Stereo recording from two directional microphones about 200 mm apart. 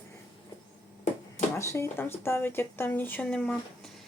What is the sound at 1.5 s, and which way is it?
Speech, 15° left (ahead or behind).